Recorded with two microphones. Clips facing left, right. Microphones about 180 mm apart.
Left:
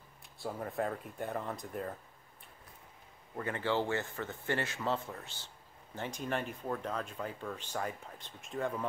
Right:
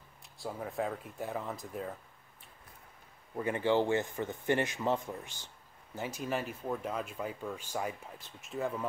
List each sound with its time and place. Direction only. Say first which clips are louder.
0.4 s speech: even; centre (ahead or behind)
3.3 s speech: right 4 dB; 15° right (ahead or behind)